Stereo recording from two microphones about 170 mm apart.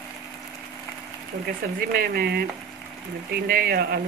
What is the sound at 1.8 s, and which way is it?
Speech, 60° right (ahead or behind).